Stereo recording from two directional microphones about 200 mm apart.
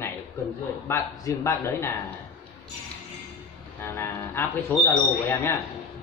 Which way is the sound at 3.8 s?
15° left (ahead or behind).